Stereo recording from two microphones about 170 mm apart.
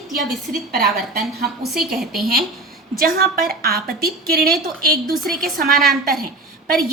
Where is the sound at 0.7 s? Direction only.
65° right (ahead or behind).